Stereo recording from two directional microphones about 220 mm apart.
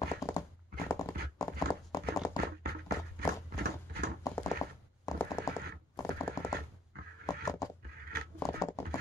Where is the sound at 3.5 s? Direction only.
45° right (ahead or behind).